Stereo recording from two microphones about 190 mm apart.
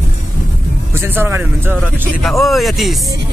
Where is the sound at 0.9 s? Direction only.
10° right (ahead or behind).